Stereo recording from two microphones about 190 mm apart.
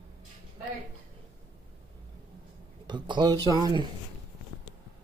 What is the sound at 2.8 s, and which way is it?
Speech, 25° right (ahead or behind).